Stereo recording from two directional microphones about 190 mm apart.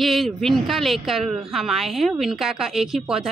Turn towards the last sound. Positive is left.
turn(degrees=0)  # may be behind; listen again after turning